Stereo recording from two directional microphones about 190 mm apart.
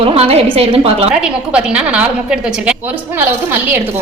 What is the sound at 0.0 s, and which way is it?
Speech, 30° right (ahead or behind).